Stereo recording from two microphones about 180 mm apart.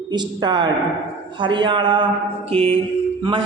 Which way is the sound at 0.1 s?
25° right (ahead or behind).